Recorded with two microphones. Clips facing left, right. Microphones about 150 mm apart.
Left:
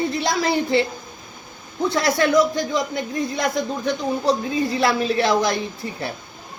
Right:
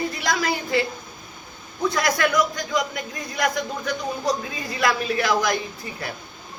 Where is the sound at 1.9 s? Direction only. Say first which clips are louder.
Left 5 dB; 25° left (ahead or behind).